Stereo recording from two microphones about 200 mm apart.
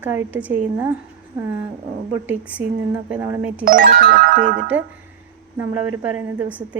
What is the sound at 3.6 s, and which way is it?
Music, 45° right (ahead or behind).